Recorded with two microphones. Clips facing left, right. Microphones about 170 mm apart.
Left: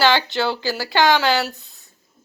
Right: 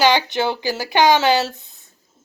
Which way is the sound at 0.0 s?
15° right (ahead or behind).